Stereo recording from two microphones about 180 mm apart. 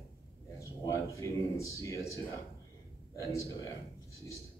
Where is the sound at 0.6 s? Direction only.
15° left (ahead or behind).